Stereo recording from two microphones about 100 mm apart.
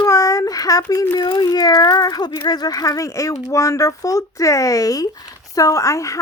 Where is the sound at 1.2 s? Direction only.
45° left (ahead or behind).